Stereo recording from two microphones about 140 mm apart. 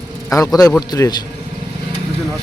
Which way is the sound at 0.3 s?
25° left (ahead or behind).